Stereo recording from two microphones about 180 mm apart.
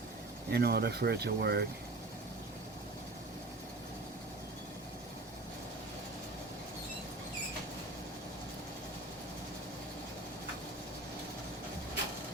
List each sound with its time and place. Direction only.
0.5 s speech: 65° right (ahead or behind)